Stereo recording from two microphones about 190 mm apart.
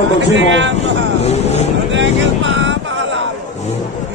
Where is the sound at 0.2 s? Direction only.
75° right (ahead or behind).